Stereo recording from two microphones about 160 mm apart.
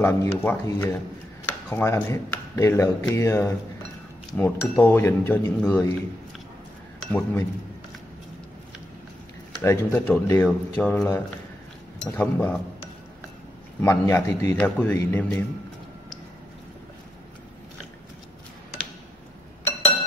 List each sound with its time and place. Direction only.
0.0 s speech: 15° left (ahead or behind)
7.1 s speech: 10° left (ahead or behind)
9.6 s speech: 15° left (ahead or behind)
13.7 s speech: 15° left (ahead or behind)